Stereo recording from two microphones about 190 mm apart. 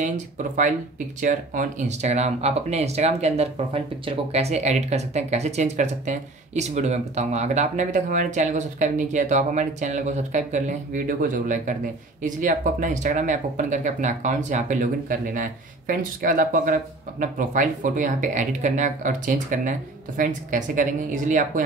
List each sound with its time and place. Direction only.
0.0 s speech: 40° right (ahead or behind)